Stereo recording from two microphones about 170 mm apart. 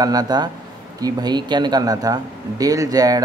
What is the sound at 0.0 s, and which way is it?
Speech, 20° right (ahead or behind).